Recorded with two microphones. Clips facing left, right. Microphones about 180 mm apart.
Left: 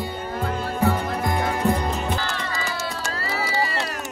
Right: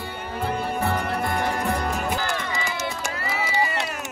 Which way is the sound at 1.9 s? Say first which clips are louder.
Right 1 dB; 10° right (ahead or behind).